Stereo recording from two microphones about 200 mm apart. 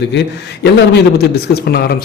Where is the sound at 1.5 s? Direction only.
55° left (ahead or behind).